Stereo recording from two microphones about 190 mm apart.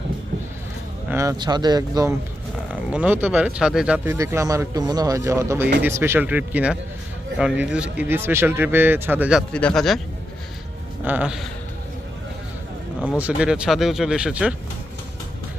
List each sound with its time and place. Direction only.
1.1 s speech: 15° right (ahead or behind)
2.6 s speech: 5° right (ahead or behind)
9.5 s speech: 5° left (ahead or behind)
11.0 s speech: 10° right (ahead or behind)
13.0 s speech: 5° right (ahead or behind)